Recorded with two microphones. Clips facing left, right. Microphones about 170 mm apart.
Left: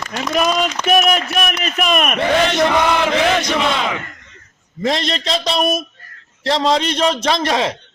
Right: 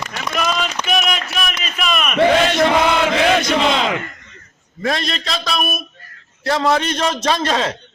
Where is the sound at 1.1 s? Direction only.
50° left (ahead or behind).